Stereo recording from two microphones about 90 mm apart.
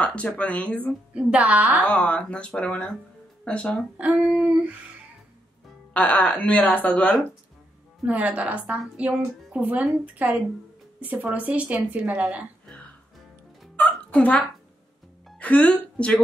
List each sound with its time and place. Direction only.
0.0 s a woman's voice: 10° left (ahead or behind)
1.1 s a woman's voice: 15° right (ahead or behind)
1.9 s a woman's voice: 15° left (ahead or behind)
4.2 s a woman's voice: 10° right (ahead or behind)
5.9 s a woman's voice: 15° left (ahead or behind)
8.1 s a woman's voice: 15° right (ahead or behind)
14.1 s a woman's voice: 15° left (ahead or behind)